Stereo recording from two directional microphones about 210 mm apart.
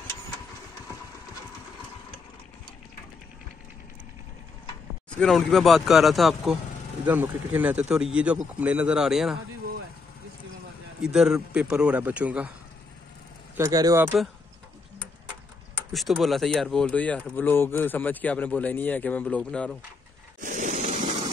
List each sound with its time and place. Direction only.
5.2 s speech: centre (ahead or behind)
11.0 s speech: centre (ahead or behind)
13.6 s speech: 15° right (ahead or behind)
15.9 s speech: centre (ahead or behind)
20.3 s a sound: 35° right (ahead or behind)
21.0 s vehicle: 30° right (ahead or behind)